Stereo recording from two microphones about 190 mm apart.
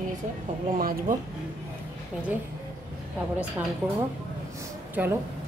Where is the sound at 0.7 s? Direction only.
50° right (ahead or behind).